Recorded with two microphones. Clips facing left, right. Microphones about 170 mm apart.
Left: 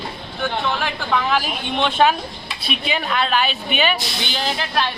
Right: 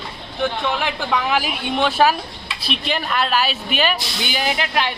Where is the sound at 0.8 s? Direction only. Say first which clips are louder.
Even; 10° right (ahead or behind).